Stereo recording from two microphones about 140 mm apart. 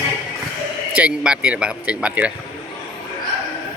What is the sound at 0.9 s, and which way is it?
Speech, 10° right (ahead or behind).